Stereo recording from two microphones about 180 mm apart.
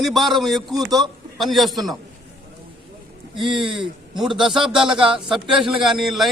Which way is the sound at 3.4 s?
30° right (ahead or behind).